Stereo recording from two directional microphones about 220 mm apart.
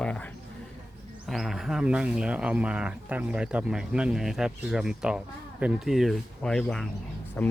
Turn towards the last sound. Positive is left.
turn(degrees=5)  # may be behind; listen again after turning